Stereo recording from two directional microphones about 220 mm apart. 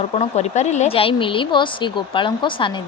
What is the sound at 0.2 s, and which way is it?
Speech, 30° left (ahead or behind).